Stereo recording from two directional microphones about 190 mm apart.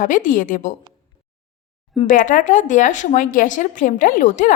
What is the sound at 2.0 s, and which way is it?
Speech, 45° left (ahead or behind).